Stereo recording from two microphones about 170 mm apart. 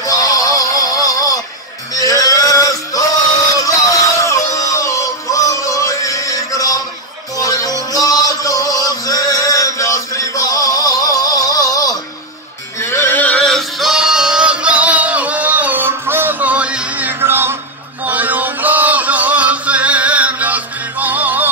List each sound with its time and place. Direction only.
0.0 s synthetic singing: 20° left (ahead or behind)
2.0 s male singing: 20° left (ahead or behind)
7.3 s music: 20° left (ahead or behind)
12.8 s male singing: 15° left (ahead or behind); by 21.5 s 10° right (ahead or behind)